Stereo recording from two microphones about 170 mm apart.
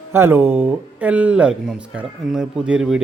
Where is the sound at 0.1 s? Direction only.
15° right (ahead or behind).